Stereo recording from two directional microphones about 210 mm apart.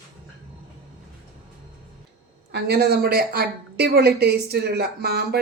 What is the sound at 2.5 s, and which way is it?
A woman's voice, 50° right (ahead or behind).